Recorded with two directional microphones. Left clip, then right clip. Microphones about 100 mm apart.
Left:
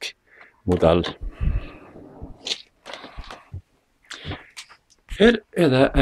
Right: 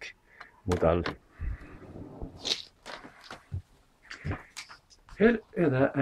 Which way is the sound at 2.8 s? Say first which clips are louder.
Left 6 dB; 50° left (ahead or behind).